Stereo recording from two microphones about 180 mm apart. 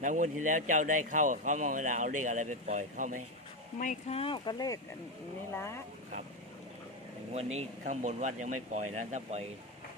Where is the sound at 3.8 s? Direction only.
40° left (ahead or behind); by 5.8 s 15° left (ahead or behind).